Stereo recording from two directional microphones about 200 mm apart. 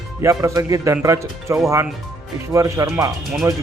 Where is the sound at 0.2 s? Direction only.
15° right (ahead or behind).